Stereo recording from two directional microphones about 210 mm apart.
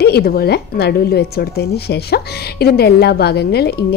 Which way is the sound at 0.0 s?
50° left (ahead or behind).